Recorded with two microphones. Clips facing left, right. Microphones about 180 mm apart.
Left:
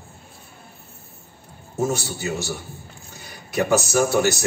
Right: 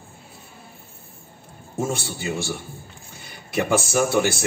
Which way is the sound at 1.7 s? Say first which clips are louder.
Left 3 dB; 25° right (ahead or behind).